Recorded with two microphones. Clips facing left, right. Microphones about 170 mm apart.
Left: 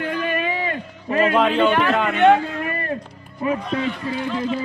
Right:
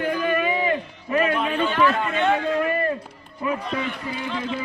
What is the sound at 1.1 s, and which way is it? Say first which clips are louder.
A man's voice: left 4 dB; 80° left.